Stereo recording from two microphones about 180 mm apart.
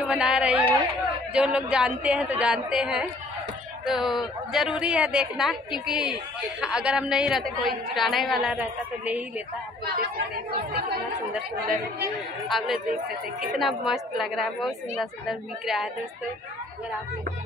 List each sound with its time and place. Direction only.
0.0 s a woman's voice: 5° right (ahead or behind)
12.4 s a woman's voice: centre (ahead or behind)
12.9 s speech: 55° right (ahead or behind)
13.5 s a woman's voice: centre (ahead or behind)